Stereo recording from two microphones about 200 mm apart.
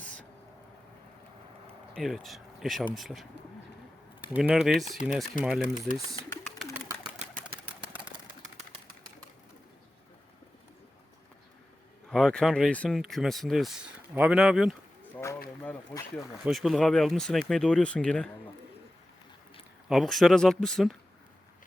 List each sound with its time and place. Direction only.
2.0 s speech: centre (ahead or behind)
4.4 s speech: 5° right (ahead or behind)
5.6 s speech: 40° left (ahead or behind)
6.1 s pigeon: 10° left (ahead or behind)
6.8 s bird: 10° right (ahead or behind)
12.0 s speech: 5° left (ahead or behind)
19.9 s speech: centre (ahead or behind)